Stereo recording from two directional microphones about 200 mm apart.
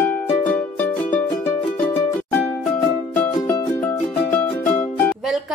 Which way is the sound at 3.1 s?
10° left (ahead or behind).